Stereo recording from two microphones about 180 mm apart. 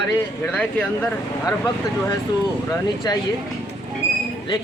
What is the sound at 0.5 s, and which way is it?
Speech, 5° left (ahead or behind).